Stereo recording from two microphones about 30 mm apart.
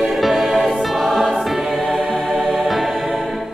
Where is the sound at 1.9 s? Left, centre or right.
Centre.